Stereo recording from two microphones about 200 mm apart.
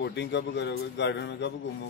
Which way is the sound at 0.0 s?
60° left (ahead or behind).